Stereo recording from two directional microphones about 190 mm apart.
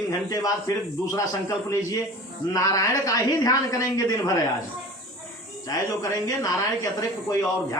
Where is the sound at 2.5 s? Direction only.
15° left (ahead or behind).